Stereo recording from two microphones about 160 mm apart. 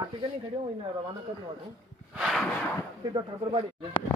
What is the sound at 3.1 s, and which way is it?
Speech, 30° right (ahead or behind).